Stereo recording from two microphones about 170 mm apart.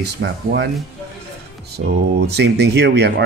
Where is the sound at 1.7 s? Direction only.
75° right (ahead or behind).